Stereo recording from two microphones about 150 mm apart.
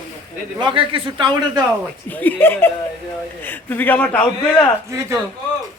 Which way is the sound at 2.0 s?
10° left (ahead or behind).